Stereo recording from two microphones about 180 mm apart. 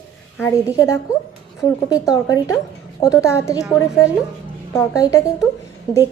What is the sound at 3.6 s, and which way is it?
Speech, 5° right (ahead or behind).